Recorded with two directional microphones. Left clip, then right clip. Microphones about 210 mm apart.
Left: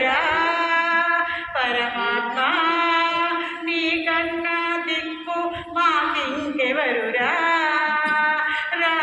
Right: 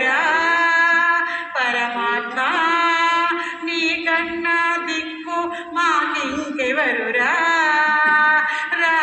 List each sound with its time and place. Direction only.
0.0 s music: 20° right (ahead or behind)
1.5 s mantra: 20° right (ahead or behind)
4.4 s mantra: 20° right (ahead or behind)
5.7 s a sound: 20° right (ahead or behind)
6.6 s carnatic music: 20° right (ahead or behind)